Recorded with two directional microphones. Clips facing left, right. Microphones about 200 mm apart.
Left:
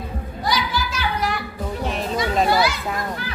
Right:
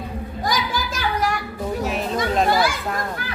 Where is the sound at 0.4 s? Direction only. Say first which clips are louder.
Left 1 dB; 45° right (ahead or behind).